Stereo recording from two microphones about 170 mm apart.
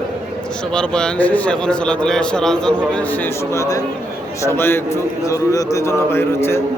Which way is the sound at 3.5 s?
20° left (ahead or behind).